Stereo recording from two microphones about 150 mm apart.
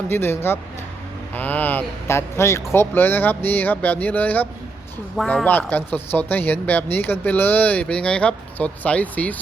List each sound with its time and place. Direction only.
0.1 s speech: 15° left (ahead or behind)
5.1 s speech: centre (ahead or behind)